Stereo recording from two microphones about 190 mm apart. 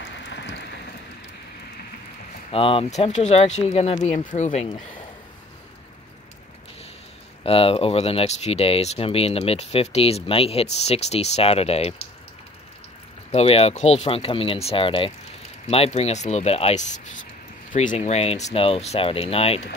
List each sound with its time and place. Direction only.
0.0 s a sound: 70° left (ahead or behind)
2.5 s speech: 30° left (ahead or behind)
7.4 s speech: 30° left (ahead or behind)
13.3 s speech: 30° left (ahead or behind)